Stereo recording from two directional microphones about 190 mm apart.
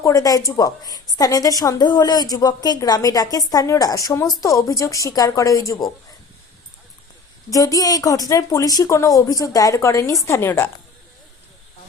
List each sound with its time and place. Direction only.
0.0 s a woman's voice: 20° left (ahead or behind)
7.5 s a woman's voice: 20° left (ahead or behind)